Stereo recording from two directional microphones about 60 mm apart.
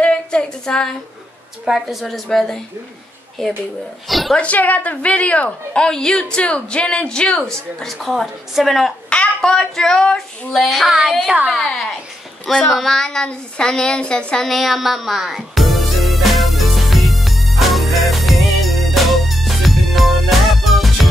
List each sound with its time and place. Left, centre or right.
0.0 s female singing: centre
1.7 s a woman's voice: centre
4.1 s a sound: centre
4.4 s a woman's voice: left
5.9 s a woman's voice: centre
9.1 s child singing: centre
11.6 s speech: centre
14.4 s music: centre